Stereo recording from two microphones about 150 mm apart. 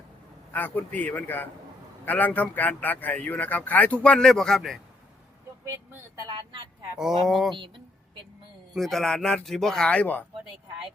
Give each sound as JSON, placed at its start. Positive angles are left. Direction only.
{"t": 0.5, "sound": "a man's voice", "side_deg": 10}
{"t": 5.6, "sound": "speech", "side_deg": -20}
{"t": 6.3, "sound": "speech", "side_deg": -30}
{"t": 7.0, "sound": "a man's voice", "side_deg": 0}
{"t": 8.7, "sound": "a man's voice", "side_deg": 0}